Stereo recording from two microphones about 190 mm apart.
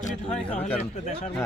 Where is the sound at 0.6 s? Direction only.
40° left (ahead or behind).